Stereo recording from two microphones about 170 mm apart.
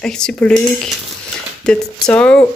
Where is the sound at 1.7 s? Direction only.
5° left (ahead or behind).